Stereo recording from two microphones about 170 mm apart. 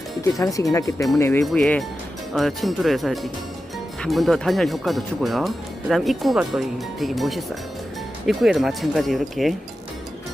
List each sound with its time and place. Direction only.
0.3 s speech: 20° left (ahead or behind)
1.4 s speech: 5° left (ahead or behind)